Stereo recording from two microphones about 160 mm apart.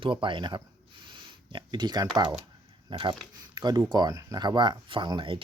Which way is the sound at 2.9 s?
30° right (ahead or behind).